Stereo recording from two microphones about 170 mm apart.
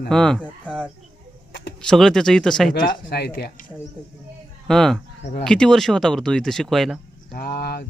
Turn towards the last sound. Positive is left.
turn(degrees=70)  # may be behind; listen again after turning